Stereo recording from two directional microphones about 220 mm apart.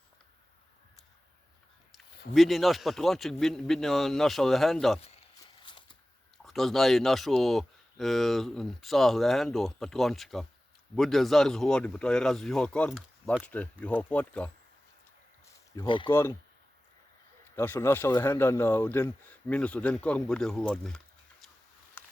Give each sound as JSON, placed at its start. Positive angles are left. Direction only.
{"t": 1.9, "sound": "speech", "side_deg": 0}
{"t": 5.6, "sound": "a sound", "side_deg": 20}
{"t": 6.4, "sound": "speech", "side_deg": 0}
{"t": 15.7, "sound": "speech", "side_deg": 20}
{"t": 17.5, "sound": "speech", "side_deg": 10}
{"t": 22.0, "sound": "a sound", "side_deg": 10}